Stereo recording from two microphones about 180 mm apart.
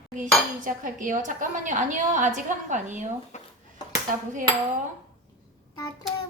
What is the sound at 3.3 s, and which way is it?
Dishes, 40° left (ahead or behind).